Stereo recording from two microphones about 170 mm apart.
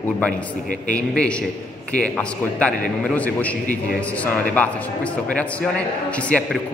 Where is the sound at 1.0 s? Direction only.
5° left (ahead or behind).